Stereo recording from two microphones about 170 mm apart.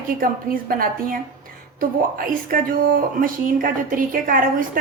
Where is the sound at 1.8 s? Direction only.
55° right (ahead or behind).